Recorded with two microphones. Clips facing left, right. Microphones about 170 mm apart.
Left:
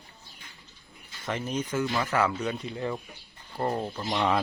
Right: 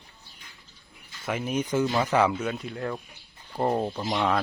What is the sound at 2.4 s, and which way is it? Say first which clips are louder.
Speech: even; centre (ahead or behind).